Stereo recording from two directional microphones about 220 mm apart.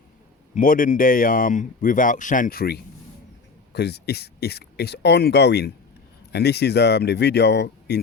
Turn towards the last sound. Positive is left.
turn(degrees=50)  # may be behind; listen again after turning